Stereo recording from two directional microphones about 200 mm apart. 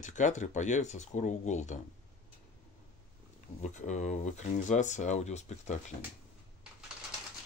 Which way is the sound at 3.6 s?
35° left (ahead or behind).